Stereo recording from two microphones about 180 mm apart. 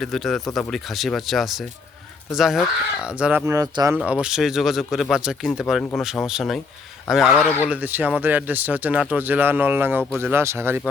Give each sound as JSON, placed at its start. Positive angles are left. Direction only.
{"t": 0.0, "sound": "speech", "side_deg": 0}
{"t": 3.4, "sound": "speech", "side_deg": -20}
{"t": 3.9, "sound": "speech", "side_deg": -10}
{"t": 7.7, "sound": "speech", "side_deg": -10}